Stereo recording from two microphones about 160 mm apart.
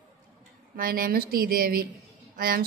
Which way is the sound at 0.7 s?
65° right (ahead or behind).